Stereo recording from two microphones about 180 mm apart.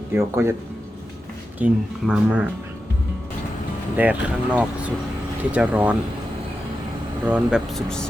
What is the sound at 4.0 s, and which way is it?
Speech, 10° right (ahead or behind).